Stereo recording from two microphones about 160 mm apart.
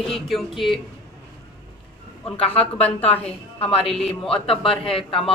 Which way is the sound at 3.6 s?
5° left (ahead or behind).